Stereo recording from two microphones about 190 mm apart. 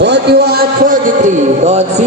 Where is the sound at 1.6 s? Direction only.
35° right (ahead or behind).